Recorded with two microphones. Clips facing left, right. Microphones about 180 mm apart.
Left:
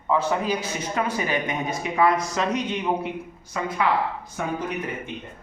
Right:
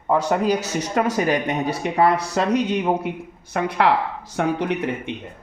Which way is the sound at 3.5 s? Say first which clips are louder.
Right 5 dB; 70° right (ahead or behind).